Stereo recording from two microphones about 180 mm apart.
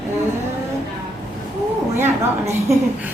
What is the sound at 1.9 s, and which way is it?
Speech, 15° right (ahead or behind).